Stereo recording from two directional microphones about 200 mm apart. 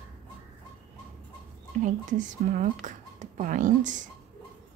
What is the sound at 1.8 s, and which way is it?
Speech, 40° right (ahead or behind).